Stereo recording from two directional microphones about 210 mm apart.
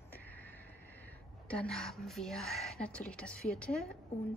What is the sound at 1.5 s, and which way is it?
A woman's voice, 5° left (ahead or behind).